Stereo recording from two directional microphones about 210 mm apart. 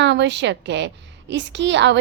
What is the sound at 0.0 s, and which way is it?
A woman's voice, 55° right (ahead or behind).